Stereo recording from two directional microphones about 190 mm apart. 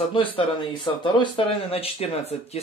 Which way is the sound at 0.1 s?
25° left (ahead or behind).